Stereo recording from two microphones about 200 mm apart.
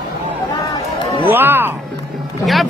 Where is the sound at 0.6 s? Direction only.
25° left (ahead or behind).